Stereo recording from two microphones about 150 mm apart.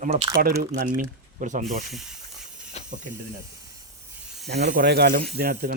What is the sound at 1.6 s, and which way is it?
Snake, centre (ahead or behind).